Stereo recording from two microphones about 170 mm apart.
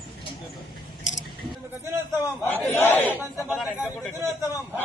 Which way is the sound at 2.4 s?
10° left (ahead or behind).